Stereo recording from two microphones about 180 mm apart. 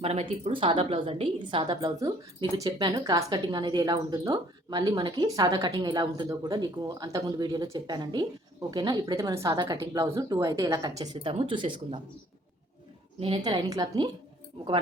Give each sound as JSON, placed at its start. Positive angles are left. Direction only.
{"t": 0.0, "sound": "a woman's voice", "side_deg": -35}
{"t": 13.1, "sound": "a woman's voice", "side_deg": -30}